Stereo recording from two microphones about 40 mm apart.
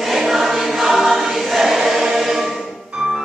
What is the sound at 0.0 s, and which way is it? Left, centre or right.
Choir, centre.